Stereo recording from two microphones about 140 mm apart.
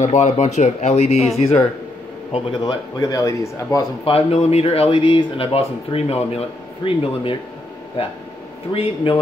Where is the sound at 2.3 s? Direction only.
30° left (ahead or behind).